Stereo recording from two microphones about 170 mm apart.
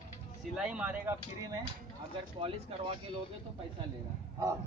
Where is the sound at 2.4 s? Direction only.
30° right (ahead or behind).